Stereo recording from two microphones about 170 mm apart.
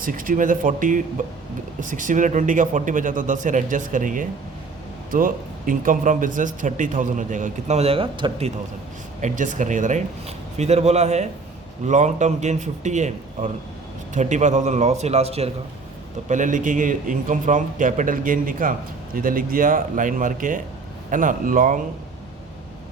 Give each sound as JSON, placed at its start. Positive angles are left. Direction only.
{"t": 0.0, "sound": "speech", "side_deg": -55}
{"t": 9.2, "sound": "speech", "side_deg": -50}
{"t": 16.3, "sound": "speech", "side_deg": -50}